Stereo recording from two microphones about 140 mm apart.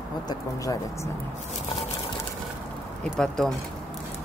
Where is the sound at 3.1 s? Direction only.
5° left (ahead or behind).